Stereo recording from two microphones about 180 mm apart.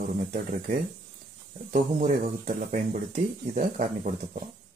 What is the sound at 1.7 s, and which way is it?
Speech, 45° right (ahead or behind).